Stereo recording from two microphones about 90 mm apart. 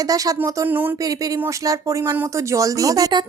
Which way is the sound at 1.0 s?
40° right (ahead or behind).